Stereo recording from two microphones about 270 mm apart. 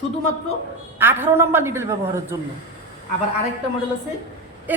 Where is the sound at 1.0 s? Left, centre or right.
Centre.